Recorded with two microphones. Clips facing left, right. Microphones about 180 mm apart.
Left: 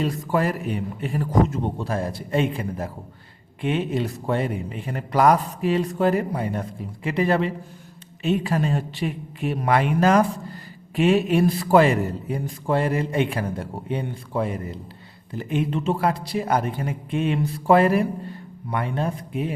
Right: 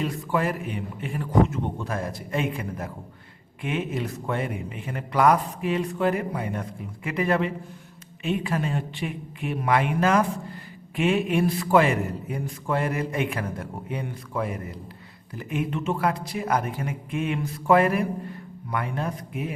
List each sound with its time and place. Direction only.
0.0 s speech: 40° left (ahead or behind)